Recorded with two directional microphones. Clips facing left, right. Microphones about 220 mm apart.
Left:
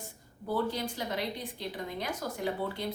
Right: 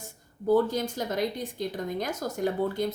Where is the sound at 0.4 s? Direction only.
45° right (ahead or behind).